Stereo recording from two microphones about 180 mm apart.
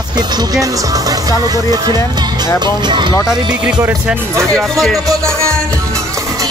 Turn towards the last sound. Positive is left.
turn(degrees=-15)  # may be behind; listen again after turning